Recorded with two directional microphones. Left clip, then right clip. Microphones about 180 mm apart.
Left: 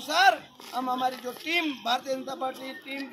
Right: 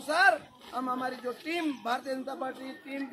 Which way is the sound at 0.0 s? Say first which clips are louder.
Left 2 dB; 25° right (ahead or behind).